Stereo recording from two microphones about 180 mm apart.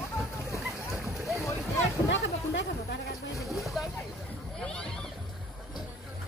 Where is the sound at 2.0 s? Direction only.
80° left.